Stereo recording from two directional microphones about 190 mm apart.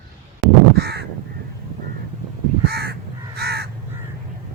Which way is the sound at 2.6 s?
55° right (ahead or behind).